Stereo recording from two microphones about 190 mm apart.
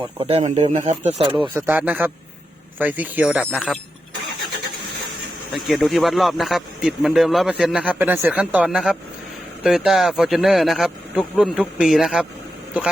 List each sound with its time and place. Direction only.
0.0 s speech: 30° right (ahead or behind)
1.5 s speech: 10° right (ahead or behind)
5.6 s speech: centre (ahead or behind)